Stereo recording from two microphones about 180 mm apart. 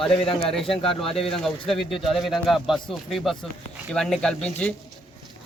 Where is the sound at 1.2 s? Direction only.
Centre (ahead or behind).